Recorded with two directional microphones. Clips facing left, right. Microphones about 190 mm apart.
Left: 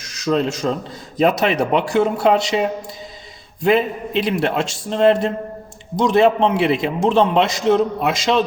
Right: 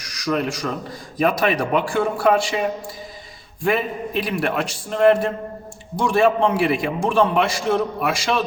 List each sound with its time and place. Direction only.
0.0 s a man's voice: 25° left (ahead or behind)